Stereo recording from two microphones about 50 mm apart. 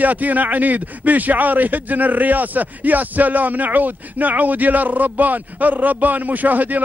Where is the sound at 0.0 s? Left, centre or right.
Right.